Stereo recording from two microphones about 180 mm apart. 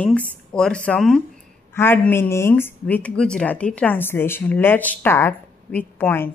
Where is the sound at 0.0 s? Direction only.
5° left (ahead or behind).